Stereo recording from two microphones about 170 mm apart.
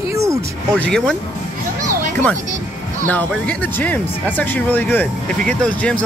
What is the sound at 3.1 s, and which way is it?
Speech, 10° left (ahead or behind).